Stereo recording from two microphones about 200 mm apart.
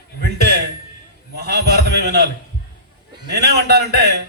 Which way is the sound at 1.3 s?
55° right (ahead or behind).